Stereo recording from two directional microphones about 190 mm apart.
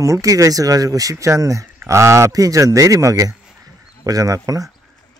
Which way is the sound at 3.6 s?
20° right (ahead or behind).